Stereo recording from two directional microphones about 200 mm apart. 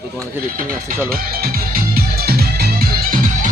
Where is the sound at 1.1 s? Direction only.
45° right (ahead or behind).